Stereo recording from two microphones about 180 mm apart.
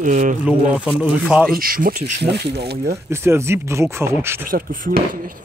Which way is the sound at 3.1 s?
15° right (ahead or behind).